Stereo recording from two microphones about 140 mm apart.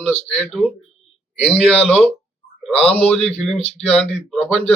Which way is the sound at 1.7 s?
45° left (ahead or behind).